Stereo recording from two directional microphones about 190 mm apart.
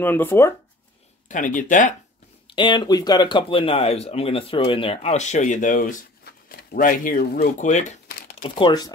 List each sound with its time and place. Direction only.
0.0 s speech: 10° left (ahead or behind)
1.3 s speech: 45° left (ahead or behind)
2.4 s speech: 25° left (ahead or behind)
8.1 s crumpling: 55° left (ahead or behind)
8.4 s speech: 25° left (ahead or behind)